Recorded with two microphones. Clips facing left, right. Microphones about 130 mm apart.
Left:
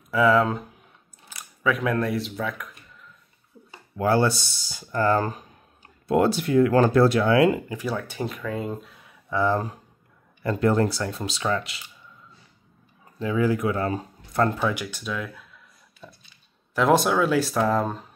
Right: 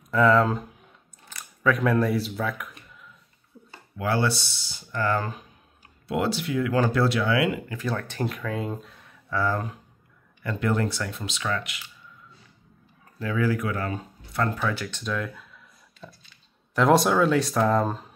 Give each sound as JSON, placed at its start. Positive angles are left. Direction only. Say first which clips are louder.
{"t": 0.1, "sound": "speech", "louder": "even", "side_deg": 5}
{"t": 1.3, "sound": "a sound", "louder": "right 1 dB", "side_deg": 5}
{"t": 4.0, "sound": "speech", "louder": "left 4 dB", "side_deg": 40}
{"t": 7.7, "sound": "speech", "louder": "left 1 dB", "side_deg": 10}
{"t": 9.3, "sound": "speech", "louder": "left 3 dB", "side_deg": 25}
{"t": 13.2, "sound": "speech", "louder": "left 3 dB", "side_deg": 20}
{"t": 14.6, "sound": "speech", "louder": "left 2 dB", "side_deg": 15}